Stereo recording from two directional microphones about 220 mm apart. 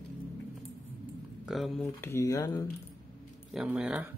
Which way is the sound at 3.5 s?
5° right (ahead or behind).